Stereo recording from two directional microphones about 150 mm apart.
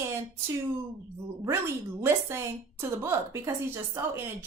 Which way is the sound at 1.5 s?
20° right (ahead or behind).